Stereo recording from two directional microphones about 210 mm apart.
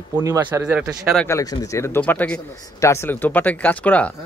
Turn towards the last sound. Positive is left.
turn(degrees=5)  # may be behind; listen again after turning